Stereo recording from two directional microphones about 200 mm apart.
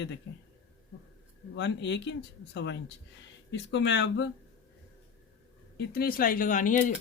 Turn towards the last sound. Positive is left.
turn(degrees=40)  # may be behind; listen again after turning